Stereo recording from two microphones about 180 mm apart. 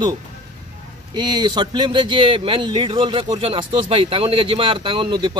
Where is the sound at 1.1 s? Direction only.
25° right (ahead or behind).